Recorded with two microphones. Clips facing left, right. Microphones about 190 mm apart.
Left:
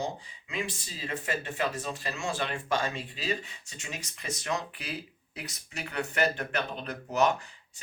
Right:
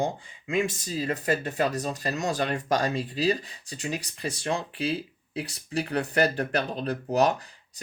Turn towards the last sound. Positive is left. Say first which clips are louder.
# right 3 dB
turn(degrees=-35)  # may be behind; listen again after turning